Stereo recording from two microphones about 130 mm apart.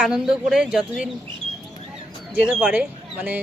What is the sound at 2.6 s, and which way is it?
Speech, 10° right (ahead or behind).